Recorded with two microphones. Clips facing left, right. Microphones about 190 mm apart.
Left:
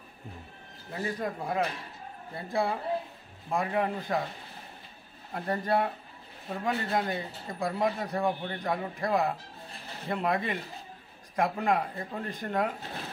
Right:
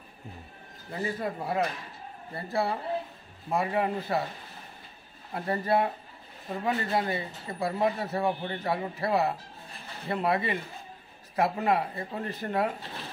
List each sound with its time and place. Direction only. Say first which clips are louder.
0.9 s speech: right 1 dB; 5° right (ahead or behind)
5.3 s speech: right 2 dB; 5° right (ahead or behind)